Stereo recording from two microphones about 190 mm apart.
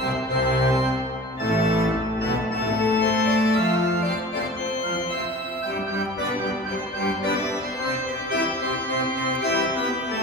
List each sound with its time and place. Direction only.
3.0 s organ: 60° left (ahead or behind)